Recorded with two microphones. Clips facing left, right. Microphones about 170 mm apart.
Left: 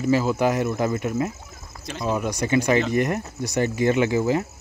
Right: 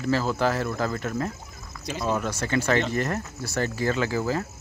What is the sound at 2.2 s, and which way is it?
Speech, 15° left (ahead or behind).